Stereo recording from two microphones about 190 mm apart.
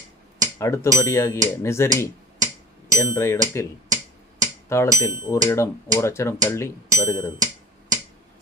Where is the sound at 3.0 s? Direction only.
15° left (ahead or behind).